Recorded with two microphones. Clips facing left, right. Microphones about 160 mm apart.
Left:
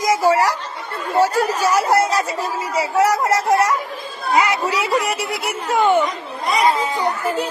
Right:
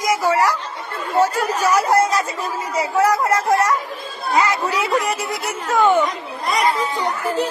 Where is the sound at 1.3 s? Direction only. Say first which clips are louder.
Left 1 dB; 35° left (ahead or behind).